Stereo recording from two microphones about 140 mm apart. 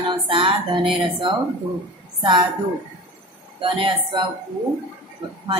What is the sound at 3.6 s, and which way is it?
Speech, 35° right (ahead or behind).